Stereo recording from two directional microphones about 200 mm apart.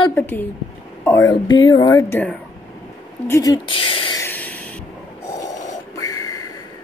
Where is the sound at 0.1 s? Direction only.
10° left (ahead or behind); by 4.2 s 25° left (ahead or behind).